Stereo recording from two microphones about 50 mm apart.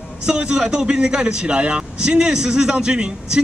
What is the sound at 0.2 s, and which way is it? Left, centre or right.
A man's voice, centre.